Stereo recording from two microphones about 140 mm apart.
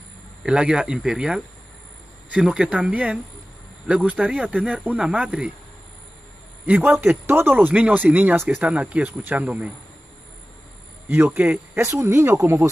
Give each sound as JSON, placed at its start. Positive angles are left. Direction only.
{"t": 0.4, "sound": "speech", "side_deg": -5}
{"t": 6.6, "sound": "speech", "side_deg": -10}
{"t": 11.2, "sound": "speech", "side_deg": -10}